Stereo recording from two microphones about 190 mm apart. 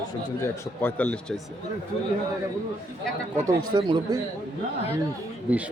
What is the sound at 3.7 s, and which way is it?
Speech, 20° right (ahead or behind).